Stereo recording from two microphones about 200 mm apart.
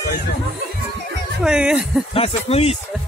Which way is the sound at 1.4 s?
5° right (ahead or behind).